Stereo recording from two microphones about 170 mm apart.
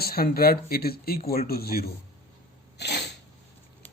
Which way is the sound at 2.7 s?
80° left.